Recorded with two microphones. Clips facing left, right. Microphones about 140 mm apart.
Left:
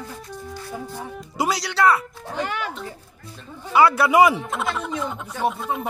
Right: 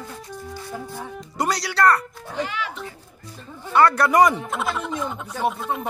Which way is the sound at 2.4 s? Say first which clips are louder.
Even; 45° left (ahead or behind).